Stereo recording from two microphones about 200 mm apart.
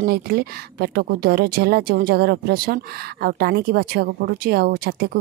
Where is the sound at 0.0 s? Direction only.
50° right (ahead or behind).